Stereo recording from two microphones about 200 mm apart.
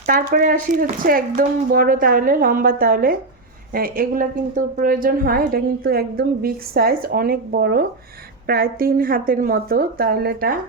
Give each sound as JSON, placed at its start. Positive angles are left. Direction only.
{"t": 0.0, "sound": "a woman's voice", "side_deg": -45}